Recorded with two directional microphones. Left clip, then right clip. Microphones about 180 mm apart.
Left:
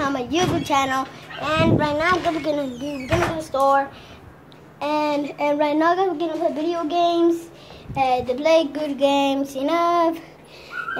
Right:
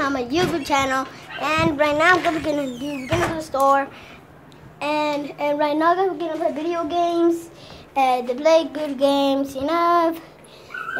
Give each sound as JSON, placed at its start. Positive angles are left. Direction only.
{"t": 0.0, "sound": "child singing", "side_deg": 0}
{"t": 1.4, "sound": "speech", "side_deg": -5}
{"t": 2.1, "sound": "speech", "side_deg": -35}
{"t": 2.4, "sound": "a child's voice", "side_deg": -10}
{"t": 7.9, "sound": "speech", "side_deg": -15}
{"t": 8.4, "sound": "child singing", "side_deg": 5}